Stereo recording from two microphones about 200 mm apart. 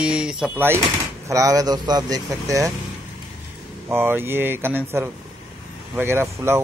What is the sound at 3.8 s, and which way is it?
Speech, 10° right (ahead or behind).